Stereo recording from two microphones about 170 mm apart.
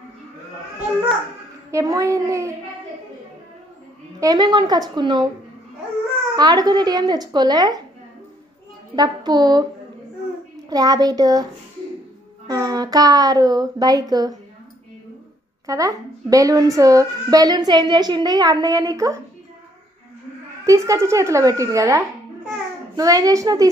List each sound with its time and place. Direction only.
1.7 s a child's voice: 20° right (ahead or behind)
4.2 s a child's voice: 25° right (ahead or behind)
6.3 s a child's voice: 25° right (ahead or behind)
8.9 s a child's voice: 25° right (ahead or behind)
10.7 s a child's voice: 20° right (ahead or behind)
12.4 s a child's voice: 20° right (ahead or behind)
15.6 s a child's voice: 20° right (ahead or behind)
20.6 s a child's voice: 20° right (ahead or behind)